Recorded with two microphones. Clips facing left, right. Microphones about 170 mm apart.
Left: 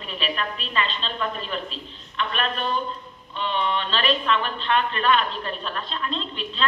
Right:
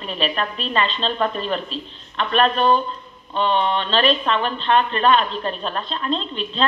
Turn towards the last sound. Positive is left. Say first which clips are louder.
# right 5 dB
turn(degrees=-30)  # may be behind; listen again after turning